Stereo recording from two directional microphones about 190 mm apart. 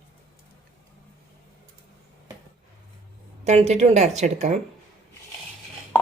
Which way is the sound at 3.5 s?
35° right (ahead or behind).